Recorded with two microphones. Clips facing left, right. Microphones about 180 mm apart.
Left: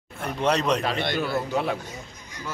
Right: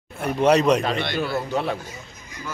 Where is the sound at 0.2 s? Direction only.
10° right (ahead or behind).